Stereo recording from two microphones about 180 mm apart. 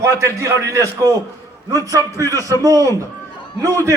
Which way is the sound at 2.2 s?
20° right (ahead or behind).